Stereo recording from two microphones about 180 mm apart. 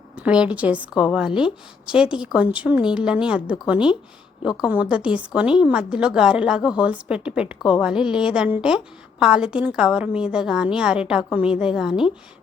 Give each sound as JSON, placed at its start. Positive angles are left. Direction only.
{"t": 0.2, "sound": "a woman's voice", "side_deg": -5}